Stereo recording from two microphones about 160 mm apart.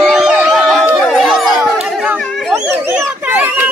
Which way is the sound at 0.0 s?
Centre (ahead or behind).